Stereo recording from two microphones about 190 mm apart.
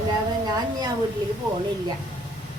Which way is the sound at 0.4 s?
20° right (ahead or behind).